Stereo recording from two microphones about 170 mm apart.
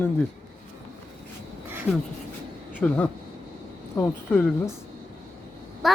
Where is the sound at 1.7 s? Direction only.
10° right (ahead or behind).